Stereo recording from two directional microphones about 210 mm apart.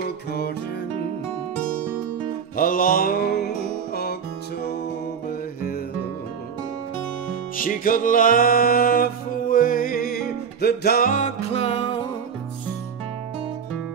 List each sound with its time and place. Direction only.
0.0 s music: 50° left (ahead or behind)
2.5 s mantra: 40° left (ahead or behind)
3.9 s music: 50° left (ahead or behind)
7.5 s music: 40° left (ahead or behind)